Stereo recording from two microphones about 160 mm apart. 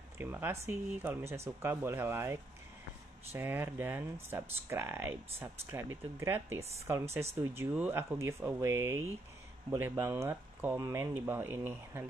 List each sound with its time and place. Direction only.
0.2 s speech: 15° right (ahead or behind)